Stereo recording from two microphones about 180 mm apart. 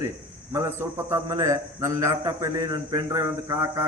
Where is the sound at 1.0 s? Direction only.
15° right (ahead or behind).